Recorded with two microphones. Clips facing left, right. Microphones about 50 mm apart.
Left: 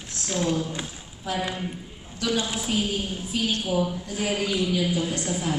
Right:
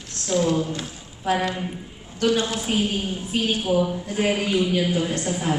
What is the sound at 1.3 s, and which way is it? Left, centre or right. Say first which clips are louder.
A woman's voice: right 5 dB; right.